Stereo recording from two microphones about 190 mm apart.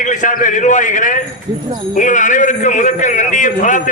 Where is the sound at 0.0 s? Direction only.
40° left (ahead or behind).